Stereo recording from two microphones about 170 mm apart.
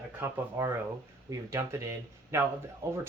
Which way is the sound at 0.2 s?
15° right (ahead or behind).